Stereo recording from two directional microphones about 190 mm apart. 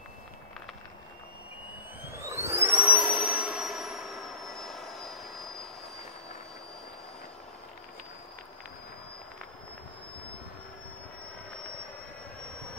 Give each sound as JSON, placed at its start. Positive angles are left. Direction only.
{"t": 2.0, "sound": "sine wave", "side_deg": -15}